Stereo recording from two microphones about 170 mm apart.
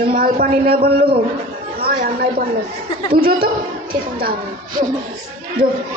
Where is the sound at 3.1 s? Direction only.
60° right (ahead or behind).